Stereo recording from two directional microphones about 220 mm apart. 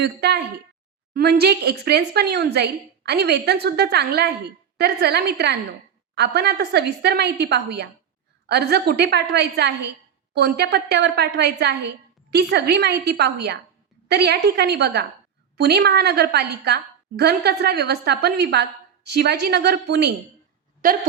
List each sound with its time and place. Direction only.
0.0 s a woman's voice: 50° right (ahead or behind)
20.8 s a woman's voice: 40° right (ahead or behind)